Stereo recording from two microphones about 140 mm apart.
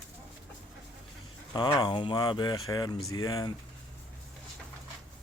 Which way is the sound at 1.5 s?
30° left (ahead or behind).